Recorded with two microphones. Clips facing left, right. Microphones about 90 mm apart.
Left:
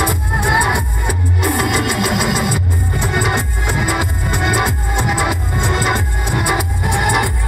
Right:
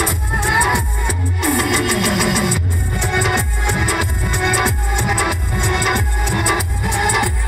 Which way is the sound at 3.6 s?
5° left (ahead or behind).